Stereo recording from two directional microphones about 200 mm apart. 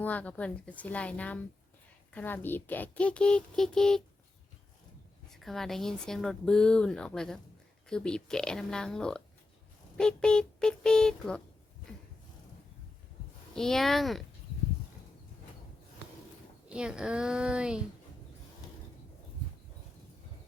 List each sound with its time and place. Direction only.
0.0 s a woman's voice: 5° left (ahead or behind)
5.3 s speech: centre (ahead or behind)
13.6 s speech: centre (ahead or behind)
16.6 s speech: 5° right (ahead or behind)